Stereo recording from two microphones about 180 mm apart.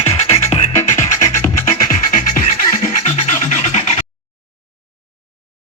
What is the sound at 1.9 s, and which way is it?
Music, 50° left (ahead or behind).